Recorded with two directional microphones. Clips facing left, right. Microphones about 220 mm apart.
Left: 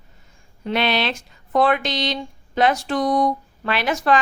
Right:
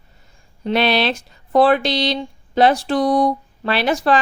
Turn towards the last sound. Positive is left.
turn(degrees=-35)  # may be behind; listen again after turning